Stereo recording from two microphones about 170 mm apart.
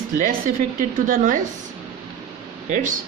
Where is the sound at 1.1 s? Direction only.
50° right (ahead or behind).